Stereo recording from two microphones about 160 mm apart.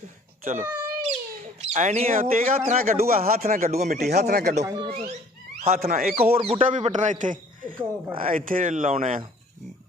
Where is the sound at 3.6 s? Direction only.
45° right (ahead or behind).